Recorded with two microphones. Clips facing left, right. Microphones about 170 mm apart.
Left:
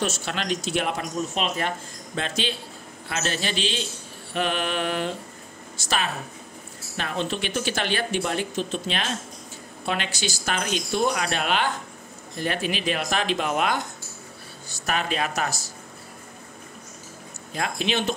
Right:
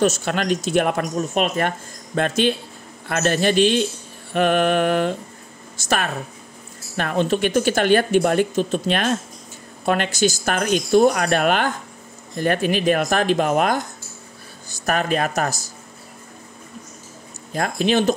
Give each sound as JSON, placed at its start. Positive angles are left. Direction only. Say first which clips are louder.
{"t": 0.0, "sound": "speech", "louder": "right 8 dB", "side_deg": -45}
{"t": 17.6, "sound": "speech", "louder": "right 7 dB", "side_deg": -45}